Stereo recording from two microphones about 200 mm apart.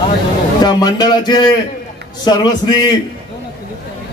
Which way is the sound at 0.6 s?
20° left (ahead or behind).